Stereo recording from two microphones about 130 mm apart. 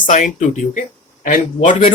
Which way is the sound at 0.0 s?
75° left (ahead or behind).